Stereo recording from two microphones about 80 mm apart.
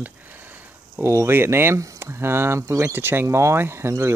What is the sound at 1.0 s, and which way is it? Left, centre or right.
Speech, right.